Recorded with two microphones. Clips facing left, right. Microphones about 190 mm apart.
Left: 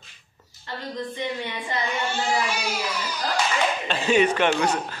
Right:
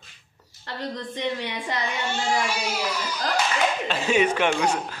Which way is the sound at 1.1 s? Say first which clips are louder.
Right 1 dB; 75° right (ahead or behind).